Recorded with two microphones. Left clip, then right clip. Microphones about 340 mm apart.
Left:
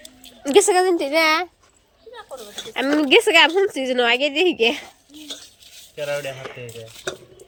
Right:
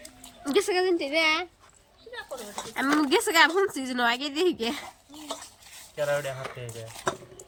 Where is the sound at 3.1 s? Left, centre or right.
Centre.